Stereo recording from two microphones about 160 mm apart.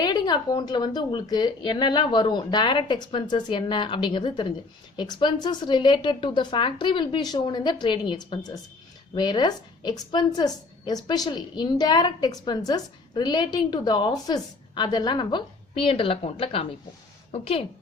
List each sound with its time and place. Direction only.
0.0 s a woman's voice: 25° left (ahead or behind)